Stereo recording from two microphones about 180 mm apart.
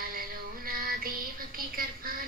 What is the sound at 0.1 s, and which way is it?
Synthetic singing, 55° right (ahead or behind).